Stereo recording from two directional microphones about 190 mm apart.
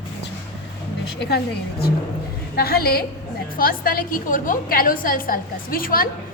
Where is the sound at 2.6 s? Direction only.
55° left (ahead or behind).